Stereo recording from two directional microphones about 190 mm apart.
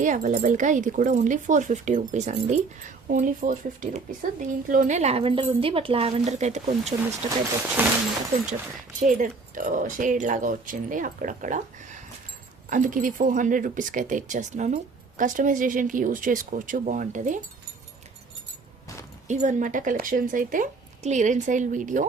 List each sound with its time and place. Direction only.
0.0 s speech: 40° right (ahead or behind)
7.8 s speech: 10° right (ahead or behind)
9.0 s speech: 40° right (ahead or behind)
19.3 s speech: 40° right (ahead or behind)